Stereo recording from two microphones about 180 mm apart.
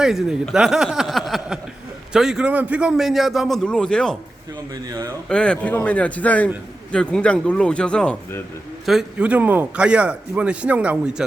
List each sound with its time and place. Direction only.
0.0 s a man's voice: centre (ahead or behind)
4.7 s speech: 20° right (ahead or behind)
5.3 s a man's voice: 5° left (ahead or behind)